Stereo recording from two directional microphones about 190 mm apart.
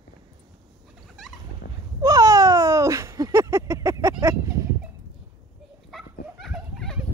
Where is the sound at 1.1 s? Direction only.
Centre (ahead or behind).